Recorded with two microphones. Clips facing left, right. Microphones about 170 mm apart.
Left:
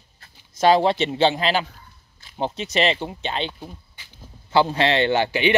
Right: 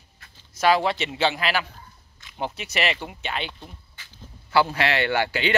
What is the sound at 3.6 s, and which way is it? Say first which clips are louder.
Speech: left 5 dB; 15° left (ahead or behind).